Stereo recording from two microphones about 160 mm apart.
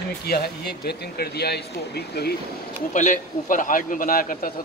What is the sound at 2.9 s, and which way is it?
A man's voice, 50° left (ahead or behind).